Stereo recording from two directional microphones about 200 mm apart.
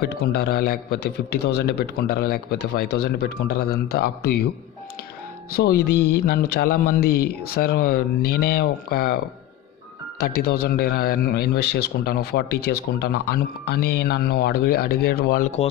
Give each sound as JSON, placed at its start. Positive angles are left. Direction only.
{"t": 0.0, "sound": "speech", "side_deg": 50}
{"t": 5.5, "sound": "speech", "side_deg": 55}
{"t": 10.2, "sound": "speech", "side_deg": 50}